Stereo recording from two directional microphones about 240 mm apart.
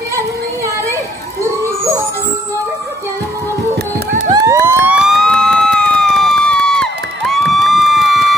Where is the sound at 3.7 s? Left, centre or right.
Right.